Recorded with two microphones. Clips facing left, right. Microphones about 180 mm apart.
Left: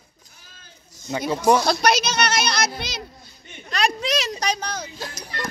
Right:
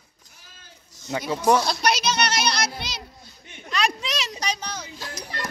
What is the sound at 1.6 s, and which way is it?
Speech, 45° left (ahead or behind).